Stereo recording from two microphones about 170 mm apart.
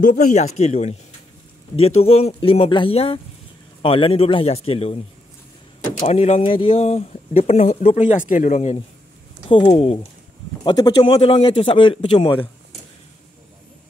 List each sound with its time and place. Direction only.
0.0 s speech: 50° left (ahead or behind); by 5.0 s 35° left (ahead or behind)
6.0 s speech: 40° left (ahead or behind)
8.1 s speech: 50° left (ahead or behind); by 12.4 s 30° left (ahead or behind)